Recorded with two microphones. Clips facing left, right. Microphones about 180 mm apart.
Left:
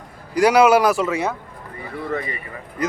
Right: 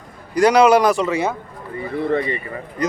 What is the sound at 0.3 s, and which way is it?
Speech, 5° left (ahead or behind).